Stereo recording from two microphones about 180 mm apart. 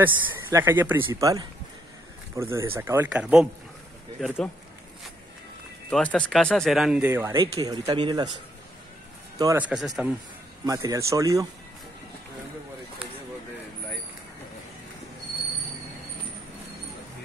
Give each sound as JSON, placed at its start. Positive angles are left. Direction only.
{"t": 0.0, "sound": "speech", "side_deg": -15}
{"t": 2.5, "sound": "speech", "side_deg": -15}
{"t": 5.9, "sound": "speech", "side_deg": 5}
{"t": 9.6, "sound": "speech", "side_deg": -5}
{"t": 10.6, "sound": "speech", "side_deg": -20}